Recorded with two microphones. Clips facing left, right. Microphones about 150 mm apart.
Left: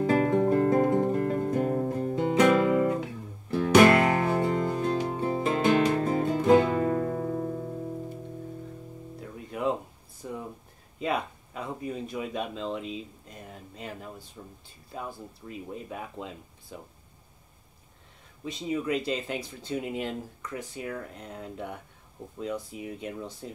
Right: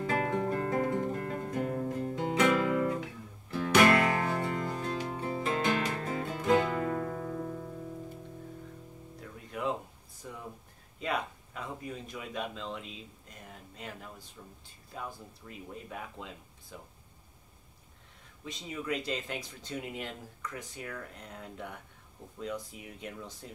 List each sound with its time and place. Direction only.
0.0 s guitar: 30° left (ahead or behind)
2.1 s music: 25° left (ahead or behind)
5.4 s music: 25° left (ahead or behind)
10.2 s a sound: 25° left (ahead or behind)
14.4 s speech: 30° left (ahead or behind)
18.4 s speech: 25° left (ahead or behind)